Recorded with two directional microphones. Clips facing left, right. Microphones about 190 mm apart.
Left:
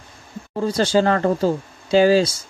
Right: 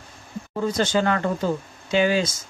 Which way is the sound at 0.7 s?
35° left (ahead or behind).